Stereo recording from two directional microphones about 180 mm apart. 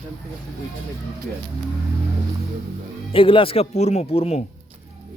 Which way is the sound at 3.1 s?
30° left (ahead or behind).